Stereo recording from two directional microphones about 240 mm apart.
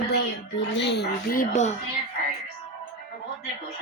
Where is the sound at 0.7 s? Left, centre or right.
Left.